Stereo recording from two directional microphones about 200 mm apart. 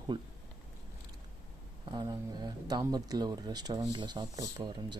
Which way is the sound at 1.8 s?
20° right (ahead or behind).